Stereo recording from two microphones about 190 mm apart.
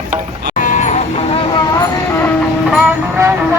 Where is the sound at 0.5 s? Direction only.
40° left (ahead or behind).